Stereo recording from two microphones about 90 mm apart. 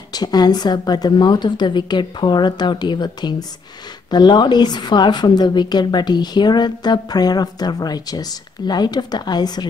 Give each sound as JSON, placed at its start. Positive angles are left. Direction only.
{"t": 0.1, "sound": "a woman's voice", "side_deg": 50}